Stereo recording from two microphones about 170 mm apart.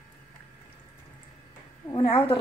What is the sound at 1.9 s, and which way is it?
Speech, 30° left (ahead or behind).